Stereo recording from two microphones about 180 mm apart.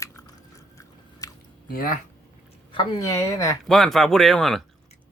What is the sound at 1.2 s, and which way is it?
Chewing, 20° left (ahead or behind).